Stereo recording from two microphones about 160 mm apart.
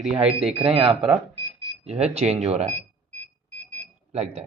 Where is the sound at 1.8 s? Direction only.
40° right (ahead or behind).